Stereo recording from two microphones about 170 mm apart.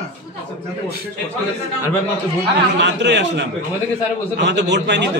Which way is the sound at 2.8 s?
90° right.